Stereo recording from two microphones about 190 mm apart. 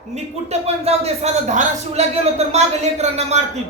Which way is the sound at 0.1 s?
35° right (ahead or behind).